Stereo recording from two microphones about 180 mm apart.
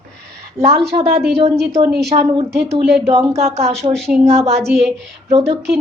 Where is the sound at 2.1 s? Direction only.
40° right (ahead or behind).